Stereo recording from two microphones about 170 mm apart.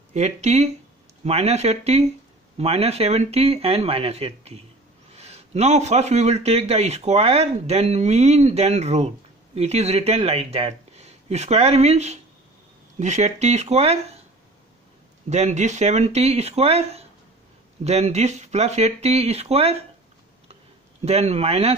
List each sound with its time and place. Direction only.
0.1 s speech: 40° right (ahead or behind)
15.2 s speech: 40° right (ahead or behind)
21.0 s speech: 40° right (ahead or behind)